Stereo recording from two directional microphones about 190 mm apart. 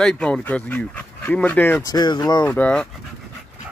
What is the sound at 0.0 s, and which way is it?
Speech, 5° left (ahead or behind).